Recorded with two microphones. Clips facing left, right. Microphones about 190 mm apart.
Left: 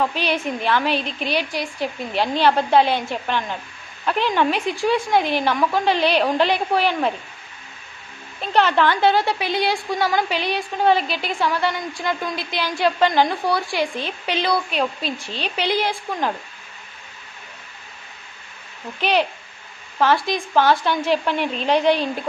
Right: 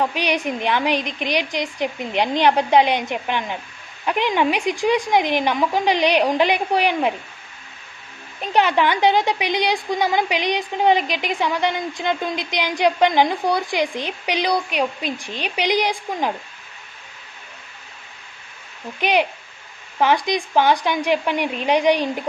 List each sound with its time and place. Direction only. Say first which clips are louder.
0.0 s a woman's voice: right 1 dB; 15° right (ahead or behind)
8.4 s a woman's voice: even; 10° right (ahead or behind)
18.9 s a woman's voice: right 1 dB; 15° right (ahead or behind)